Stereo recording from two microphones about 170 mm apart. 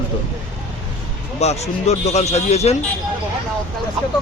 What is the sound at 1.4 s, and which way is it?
A man's voice, 40° left (ahead or behind).